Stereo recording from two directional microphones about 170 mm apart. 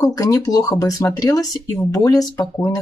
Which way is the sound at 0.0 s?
20° left (ahead or behind).